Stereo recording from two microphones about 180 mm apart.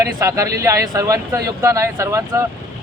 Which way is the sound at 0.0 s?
20° right (ahead or behind).